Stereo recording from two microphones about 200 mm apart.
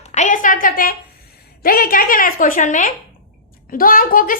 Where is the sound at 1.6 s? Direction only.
45° left (ahead or behind).